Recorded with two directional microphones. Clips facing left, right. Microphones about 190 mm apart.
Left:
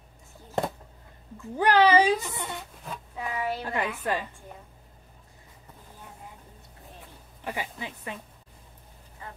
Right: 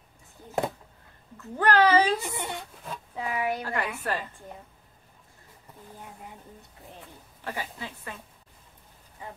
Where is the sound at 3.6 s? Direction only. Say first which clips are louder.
Left 1 dB; 20° left (ahead or behind).